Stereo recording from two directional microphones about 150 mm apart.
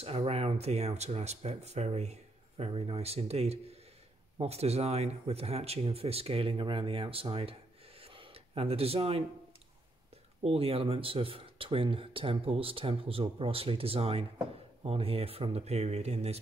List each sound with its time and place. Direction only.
0.0 s speech: 40° right (ahead or behind)
8.0 s a sound: 35° right (ahead or behind)
10.4 s speech: 40° right (ahead or behind)